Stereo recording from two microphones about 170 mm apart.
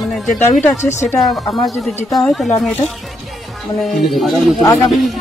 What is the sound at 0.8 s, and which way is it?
Speech, 15° left (ahead or behind).